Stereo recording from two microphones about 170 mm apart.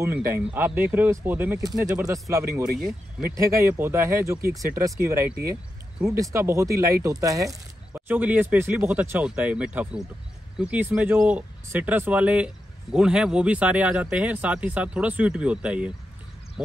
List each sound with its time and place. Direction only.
0.0 s speech: 15° right (ahead or behind)
1.6 s speech: 20° right (ahead or behind); by 16.7 s 5° right (ahead or behind)